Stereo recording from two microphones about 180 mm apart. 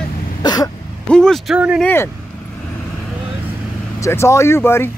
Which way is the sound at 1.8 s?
10° left (ahead or behind).